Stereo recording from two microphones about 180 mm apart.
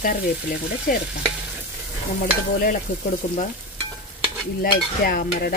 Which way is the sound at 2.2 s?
50° left (ahead or behind).